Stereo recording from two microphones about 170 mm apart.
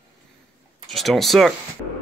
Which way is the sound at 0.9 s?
Centre (ahead or behind).